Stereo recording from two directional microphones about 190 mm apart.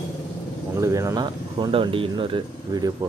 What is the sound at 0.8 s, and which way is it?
Speech, 15° right (ahead or behind).